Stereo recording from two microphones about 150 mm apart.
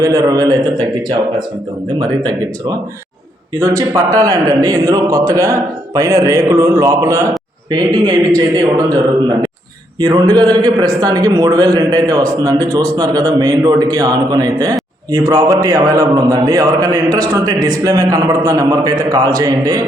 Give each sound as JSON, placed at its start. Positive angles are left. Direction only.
{"t": 0.0, "sound": "a man's voice", "side_deg": -25}
{"t": 10.0, "sound": "a man's voice", "side_deg": -25}